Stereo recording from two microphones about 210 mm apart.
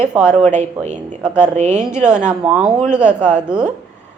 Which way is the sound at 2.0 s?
5° right (ahead or behind).